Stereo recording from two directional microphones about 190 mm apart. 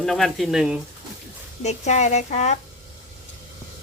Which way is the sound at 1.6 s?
35° left (ahead or behind).